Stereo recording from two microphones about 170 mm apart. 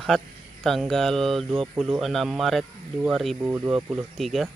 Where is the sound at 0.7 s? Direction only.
Centre (ahead or behind).